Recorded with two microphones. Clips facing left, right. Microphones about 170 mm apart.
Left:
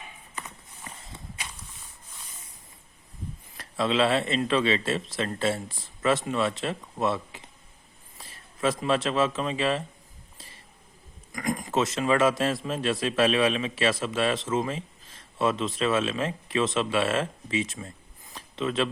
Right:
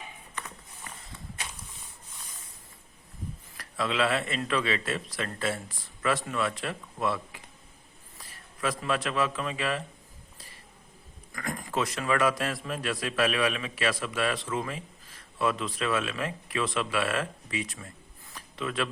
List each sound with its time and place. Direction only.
3.6 s a man's voice: 25° left (ahead or behind)
11.3 s a man's voice: 15° left (ahead or behind)
18.3 s a sound: 25° left (ahead or behind)